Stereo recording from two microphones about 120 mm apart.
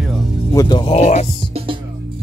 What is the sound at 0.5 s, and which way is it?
Speech, 40° left (ahead or behind).